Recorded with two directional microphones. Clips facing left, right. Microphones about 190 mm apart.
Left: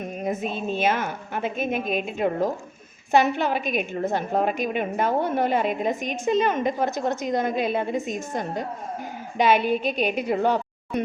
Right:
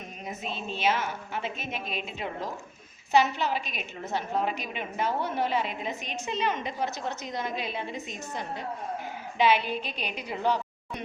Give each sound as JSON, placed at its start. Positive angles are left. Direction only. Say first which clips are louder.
{"t": 0.0, "sound": "a woman's voice", "louder": "left 10 dB", "side_deg": 50}